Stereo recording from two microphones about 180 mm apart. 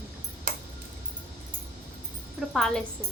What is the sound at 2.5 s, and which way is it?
Speech, centre (ahead or behind).